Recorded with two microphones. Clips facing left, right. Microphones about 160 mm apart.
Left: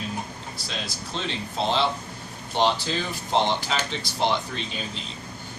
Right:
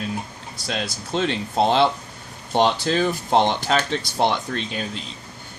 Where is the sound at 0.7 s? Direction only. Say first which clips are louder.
Right 8 dB; 55° right (ahead or behind).